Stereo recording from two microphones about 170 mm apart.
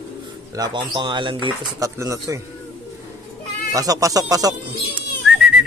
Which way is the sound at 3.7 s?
20° right (ahead or behind).